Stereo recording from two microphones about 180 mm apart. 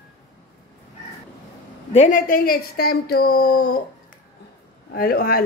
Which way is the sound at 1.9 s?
40° left (ahead or behind).